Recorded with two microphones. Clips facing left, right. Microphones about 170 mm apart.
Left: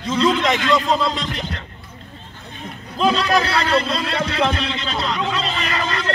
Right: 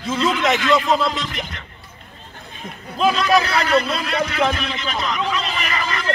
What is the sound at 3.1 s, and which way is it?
A man's voice, 30° left (ahead or behind).